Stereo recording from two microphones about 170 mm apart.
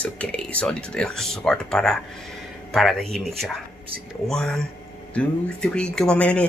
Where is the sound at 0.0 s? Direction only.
10° left (ahead or behind).